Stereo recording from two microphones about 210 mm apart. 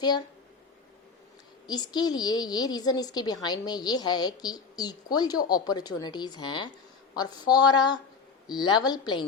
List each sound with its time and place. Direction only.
1.6 s a woman's voice: 20° left (ahead or behind)